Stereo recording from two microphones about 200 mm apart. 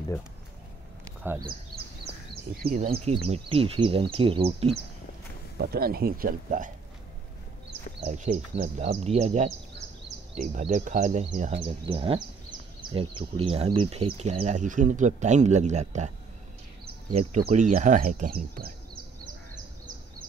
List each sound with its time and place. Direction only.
1.2 s speech: 10° right (ahead or behind)
2.6 s speech: 45° right (ahead or behind)
5.6 s speech: 50° right (ahead or behind)
8.0 s speech: 35° right (ahead or behind)
17.1 s speech: 30° right (ahead or behind); by 18.7 s 45° right (ahead or behind)